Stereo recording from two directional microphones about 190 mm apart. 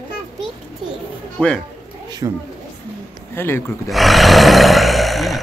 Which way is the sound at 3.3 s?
10° left (ahead or behind).